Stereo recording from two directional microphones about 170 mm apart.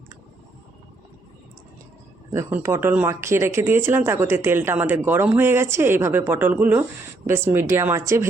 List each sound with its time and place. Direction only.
2.3 s speech: 15° right (ahead or behind)